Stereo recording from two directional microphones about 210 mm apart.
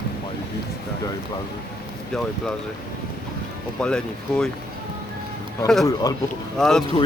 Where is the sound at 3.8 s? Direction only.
5° left (ahead or behind).